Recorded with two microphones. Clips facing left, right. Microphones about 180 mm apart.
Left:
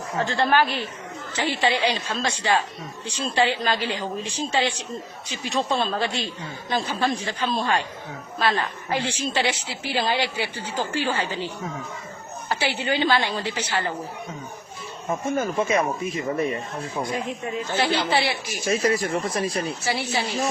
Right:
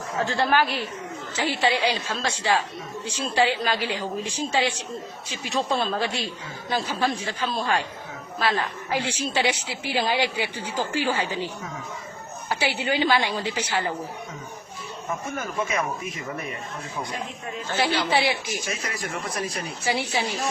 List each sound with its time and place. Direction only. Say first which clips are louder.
0.3 s a woman's voice: left 2 dB; 5° right (ahead or behind)
12.5 s a woman's voice: even; 10° right (ahead or behind)
15.4 s speech: left 5 dB; 30° left (ahead or behind)
17.7 s a woman's voice: even; 10° right (ahead or behind)
18.6 s speech: left 10 dB; 35° left (ahead or behind)
19.8 s a woman's voice: even; 15° right (ahead or behind)